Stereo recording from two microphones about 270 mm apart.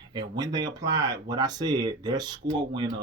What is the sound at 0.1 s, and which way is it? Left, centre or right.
Speech, centre.